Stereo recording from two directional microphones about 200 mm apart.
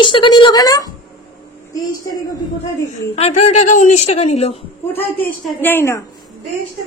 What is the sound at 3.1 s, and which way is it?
A woman's voice, 30° left (ahead or behind).